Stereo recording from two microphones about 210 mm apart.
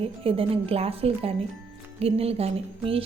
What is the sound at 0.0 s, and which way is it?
Speech, 25° right (ahead or behind).